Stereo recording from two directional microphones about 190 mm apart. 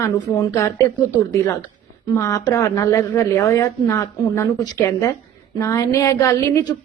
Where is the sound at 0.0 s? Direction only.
15° left (ahead or behind).